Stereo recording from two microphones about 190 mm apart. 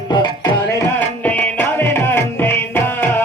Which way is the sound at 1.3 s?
10° left (ahead or behind).